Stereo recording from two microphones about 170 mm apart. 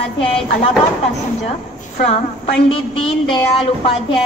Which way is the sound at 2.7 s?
35° left (ahead or behind).